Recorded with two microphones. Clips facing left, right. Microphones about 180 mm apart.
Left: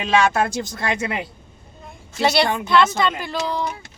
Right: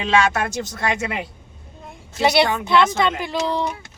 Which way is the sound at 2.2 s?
15° right (ahead or behind).